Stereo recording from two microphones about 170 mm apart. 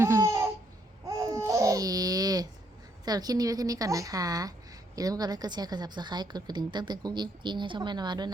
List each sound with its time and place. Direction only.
0.0 s laughter: 15° right (ahead or behind)
1.0 s babbling: 20° right (ahead or behind)
3.0 s a woman's voice: 25° right (ahead or behind)